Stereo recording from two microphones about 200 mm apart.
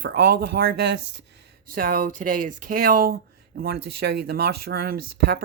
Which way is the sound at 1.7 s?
45° right (ahead or behind).